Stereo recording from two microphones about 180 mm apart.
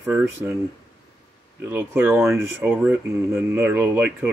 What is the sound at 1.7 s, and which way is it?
Speech, 10° right (ahead or behind).